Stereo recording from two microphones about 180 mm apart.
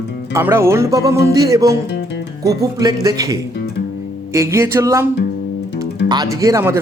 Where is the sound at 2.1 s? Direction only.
75° left (ahead or behind).